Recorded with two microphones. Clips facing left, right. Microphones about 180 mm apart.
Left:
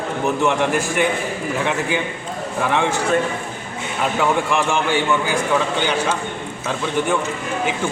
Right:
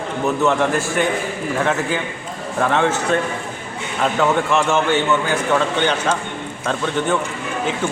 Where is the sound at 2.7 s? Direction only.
10° left (ahead or behind).